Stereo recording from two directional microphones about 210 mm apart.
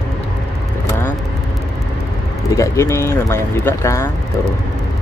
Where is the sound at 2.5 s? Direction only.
15° left (ahead or behind).